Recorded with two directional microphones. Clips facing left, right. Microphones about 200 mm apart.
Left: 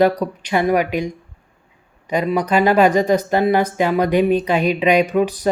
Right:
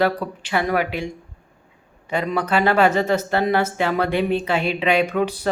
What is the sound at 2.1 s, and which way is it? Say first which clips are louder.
Speech: left 4 dB; 10° left (ahead or behind).